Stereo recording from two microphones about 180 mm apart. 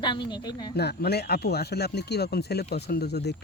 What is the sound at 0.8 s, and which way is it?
Speech, 65° left (ahead or behind).